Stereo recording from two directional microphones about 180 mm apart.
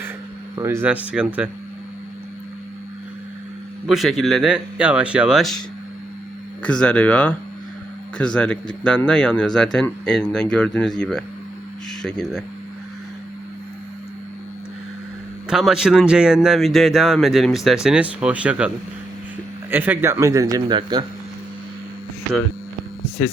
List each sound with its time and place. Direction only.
0.5 s a man's voice: 15° right (ahead or behind)
3.8 s a man's voice: centre (ahead or behind)
15.4 s a man's voice: centre (ahead or behind)
19.7 s a man's voice: 10° right (ahead or behind)